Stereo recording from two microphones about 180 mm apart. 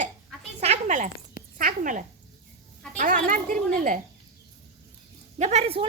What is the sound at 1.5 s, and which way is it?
Speech, 50° right (ahead or behind).